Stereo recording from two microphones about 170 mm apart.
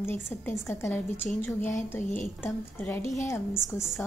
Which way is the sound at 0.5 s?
15° left (ahead or behind).